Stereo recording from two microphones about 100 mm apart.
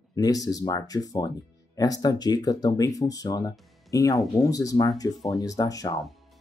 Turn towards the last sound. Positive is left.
turn(degrees=35)  # may be behind; listen again after turning